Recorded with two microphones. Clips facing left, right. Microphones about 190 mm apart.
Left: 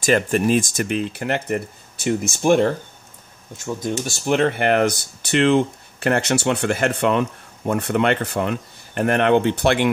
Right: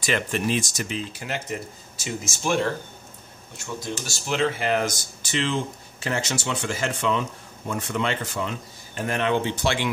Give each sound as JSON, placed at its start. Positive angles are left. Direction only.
{"t": 0.0, "sound": "speech", "side_deg": 45}
{"t": 4.1, "sound": "speech", "side_deg": 55}